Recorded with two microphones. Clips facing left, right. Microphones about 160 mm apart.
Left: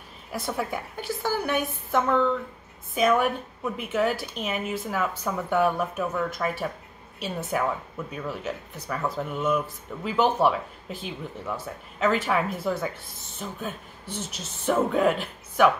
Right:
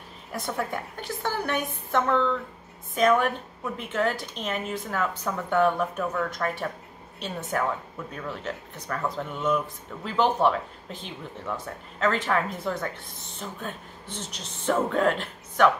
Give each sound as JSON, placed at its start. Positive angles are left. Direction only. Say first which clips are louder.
{"t": 0.3, "sound": "a woman's voice", "louder": "left 1 dB", "side_deg": 5}